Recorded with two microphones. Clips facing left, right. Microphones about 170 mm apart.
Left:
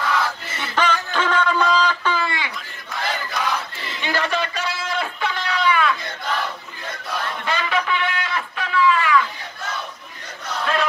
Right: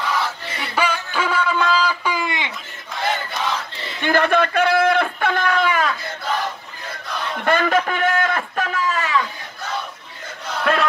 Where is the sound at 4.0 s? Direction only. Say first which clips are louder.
Right 6 dB; 55° right (ahead or behind).